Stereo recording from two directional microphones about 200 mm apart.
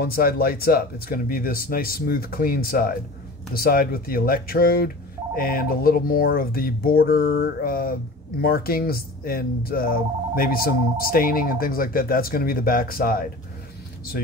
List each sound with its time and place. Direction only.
0.0 s speech: 50° left (ahead or behind)